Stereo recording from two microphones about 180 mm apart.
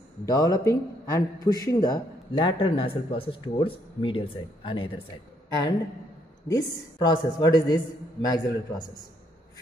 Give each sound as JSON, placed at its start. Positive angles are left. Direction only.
{"t": 0.2, "sound": "a man's voice", "side_deg": 20}
{"t": 6.5, "sound": "a man's voice", "side_deg": 25}